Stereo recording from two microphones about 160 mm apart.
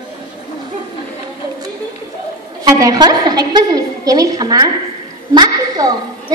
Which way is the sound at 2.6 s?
20° right (ahead or behind).